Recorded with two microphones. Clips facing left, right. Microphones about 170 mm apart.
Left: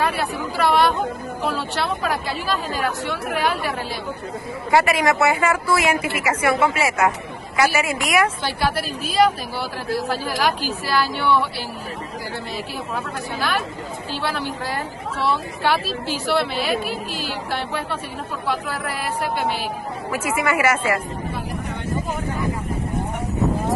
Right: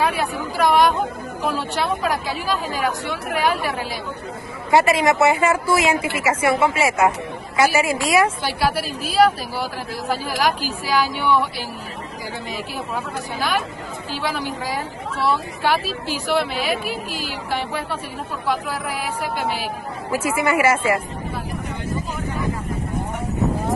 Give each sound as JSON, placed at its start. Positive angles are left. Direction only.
{"t": 0.0, "sound": "speech", "side_deg": -10}
{"t": 2.2, "sound": "a woman's voice", "side_deg": -10}
{"t": 4.6, "sound": "a woman's voice", "side_deg": -25}
{"t": 8.5, "sound": "a woman's voice", "side_deg": -10}
{"t": 12.9, "sound": "a woman's voice", "side_deg": -10}
{"t": 20.3, "sound": "a woman's voice", "side_deg": -25}